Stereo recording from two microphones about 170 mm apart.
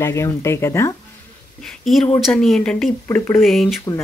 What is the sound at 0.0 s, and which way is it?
Speech, 15° left (ahead or behind).